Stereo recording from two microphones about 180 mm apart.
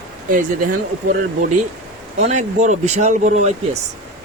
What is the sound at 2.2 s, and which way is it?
Speech, 40° right (ahead or behind).